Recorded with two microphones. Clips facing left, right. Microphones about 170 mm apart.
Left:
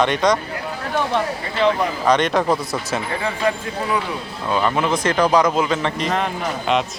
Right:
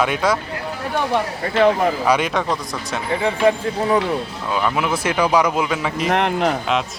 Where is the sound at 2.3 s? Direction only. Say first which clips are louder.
Left 3 dB; 5° left (ahead or behind).